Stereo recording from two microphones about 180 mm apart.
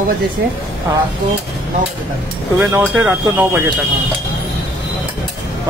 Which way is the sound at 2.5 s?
15° right (ahead or behind).